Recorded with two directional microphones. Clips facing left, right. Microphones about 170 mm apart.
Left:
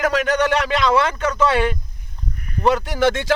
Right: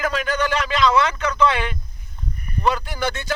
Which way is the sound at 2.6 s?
70° left (ahead or behind).